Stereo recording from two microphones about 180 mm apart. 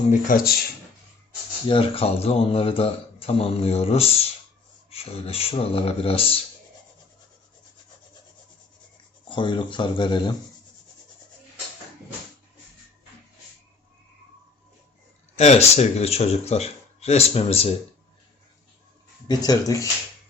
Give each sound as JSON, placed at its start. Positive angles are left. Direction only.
{"t": 0.1, "sound": "speech", "side_deg": 50}
{"t": 1.6, "sound": "a man's voice", "side_deg": 30}
{"t": 9.3, "sound": "speech", "side_deg": 25}
{"t": 15.4, "sound": "a man's voice", "side_deg": 40}
{"t": 19.3, "sound": "speech", "side_deg": 20}